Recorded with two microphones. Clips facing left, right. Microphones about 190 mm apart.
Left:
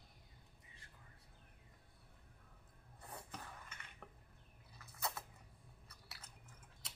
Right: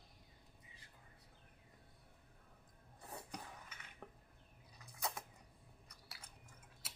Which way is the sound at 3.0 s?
5° right (ahead or behind).